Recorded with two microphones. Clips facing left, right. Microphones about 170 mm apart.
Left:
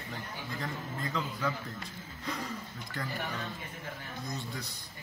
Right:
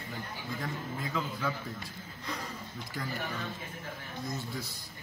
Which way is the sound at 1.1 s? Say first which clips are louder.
Right 1 dB; 5° right (ahead or behind).